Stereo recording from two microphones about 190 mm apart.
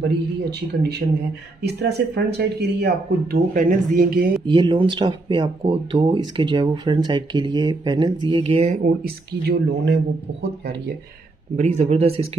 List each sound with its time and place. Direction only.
0.0 s speech: 60° right (ahead or behind)
4.5 s speech: 25° right (ahead or behind)
8.8 s speech: 55° right (ahead or behind)
11.5 s speech: 35° right (ahead or behind)